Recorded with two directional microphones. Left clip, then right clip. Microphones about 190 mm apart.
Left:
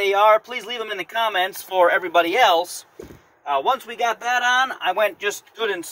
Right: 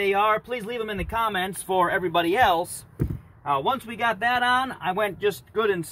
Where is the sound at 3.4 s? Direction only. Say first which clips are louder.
Left 3 dB; 5° left (ahead or behind).